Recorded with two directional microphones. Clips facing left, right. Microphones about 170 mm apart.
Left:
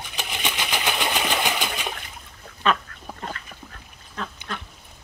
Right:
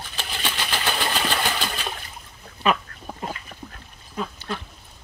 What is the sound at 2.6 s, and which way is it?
Duck, 10° right (ahead or behind).